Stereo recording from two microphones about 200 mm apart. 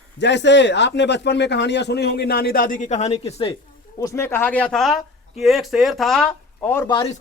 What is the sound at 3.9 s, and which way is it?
A man's voice, 15° left (ahead or behind).